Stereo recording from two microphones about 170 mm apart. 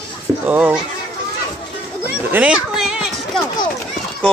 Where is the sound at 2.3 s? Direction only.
5° right (ahead or behind).